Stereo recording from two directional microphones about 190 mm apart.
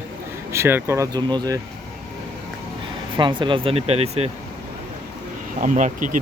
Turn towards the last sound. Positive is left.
turn(degrees=-45)  # may be behind; listen again after turning